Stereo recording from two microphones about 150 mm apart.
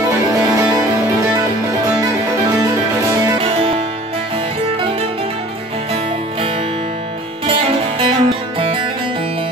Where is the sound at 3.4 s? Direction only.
40° right (ahead or behind).